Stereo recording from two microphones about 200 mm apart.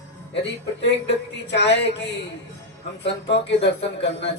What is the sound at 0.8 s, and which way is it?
A man's voice, 60° left (ahead or behind).